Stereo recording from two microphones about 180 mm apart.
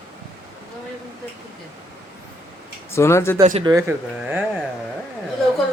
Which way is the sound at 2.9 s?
15° left (ahead or behind).